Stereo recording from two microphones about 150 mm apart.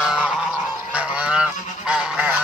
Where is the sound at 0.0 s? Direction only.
5° right (ahead or behind).